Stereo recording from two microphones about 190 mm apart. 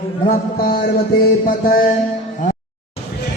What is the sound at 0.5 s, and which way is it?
Music, 50° left (ahead or behind).